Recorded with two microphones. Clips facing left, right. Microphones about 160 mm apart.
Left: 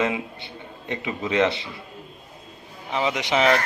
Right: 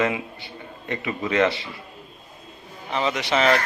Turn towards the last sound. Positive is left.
turn(degrees=15)  # may be behind; listen again after turning